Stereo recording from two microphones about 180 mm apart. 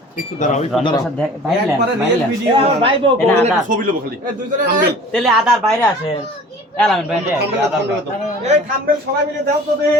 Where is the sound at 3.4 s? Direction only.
45° right (ahead or behind).